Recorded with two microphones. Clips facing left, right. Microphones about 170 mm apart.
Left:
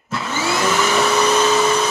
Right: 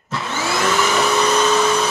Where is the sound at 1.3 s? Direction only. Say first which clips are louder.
Left 1 dB; 5° left (ahead or behind).